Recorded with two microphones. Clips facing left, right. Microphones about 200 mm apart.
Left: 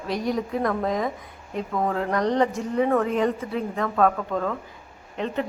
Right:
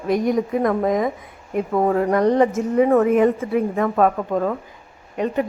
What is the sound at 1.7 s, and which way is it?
Speech, 30° right (ahead or behind).